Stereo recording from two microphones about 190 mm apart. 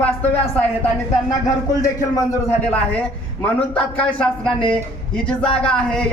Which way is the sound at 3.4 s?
5° left (ahead or behind).